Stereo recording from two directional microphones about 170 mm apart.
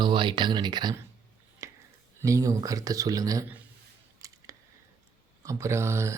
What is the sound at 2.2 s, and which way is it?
Speech, 20° right (ahead or behind).